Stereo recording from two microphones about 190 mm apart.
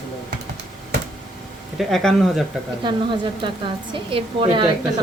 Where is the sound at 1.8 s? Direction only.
Centre (ahead or behind).